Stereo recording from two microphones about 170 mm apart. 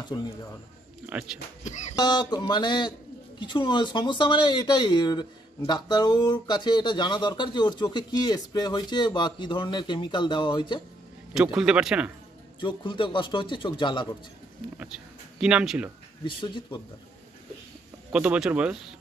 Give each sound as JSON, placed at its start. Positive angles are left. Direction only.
{"t": 1.0, "sound": "speech", "side_deg": -10}
{"t": 1.6, "sound": "music", "side_deg": 45}
{"t": 2.0, "sound": "speech", "side_deg": 25}
{"t": 11.3, "sound": "speech", "side_deg": -5}
{"t": 12.5, "sound": "speech", "side_deg": 30}
{"t": 14.8, "sound": "speech", "side_deg": -5}
{"t": 16.3, "sound": "speech", "side_deg": 30}
{"t": 18.1, "sound": "speech", "side_deg": -5}